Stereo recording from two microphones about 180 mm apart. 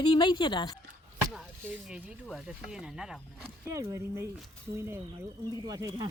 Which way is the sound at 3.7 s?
15° right (ahead or behind).